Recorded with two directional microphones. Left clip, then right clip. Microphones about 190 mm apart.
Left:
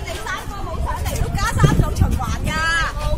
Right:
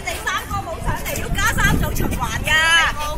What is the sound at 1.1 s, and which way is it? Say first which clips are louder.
Vehicle: right 5 dB; 50° left (ahead or behind).